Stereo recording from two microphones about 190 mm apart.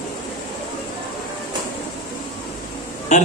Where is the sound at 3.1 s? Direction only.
40° left (ahead or behind).